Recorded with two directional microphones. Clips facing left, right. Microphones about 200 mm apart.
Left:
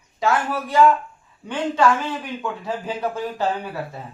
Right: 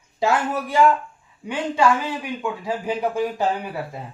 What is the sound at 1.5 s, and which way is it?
A man's voice, 10° right (ahead or behind).